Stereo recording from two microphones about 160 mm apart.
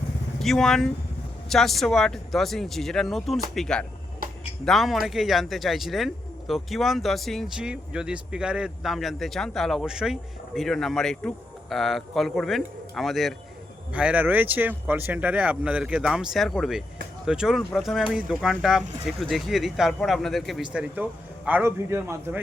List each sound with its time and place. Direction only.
0.4 s speech: 5° left (ahead or behind)
4.2 s music: 65° right (ahead or behind)
4.6 s speech: centre (ahead or behind)